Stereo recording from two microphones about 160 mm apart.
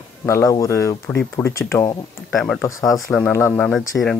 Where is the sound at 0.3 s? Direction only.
20° left (ahead or behind).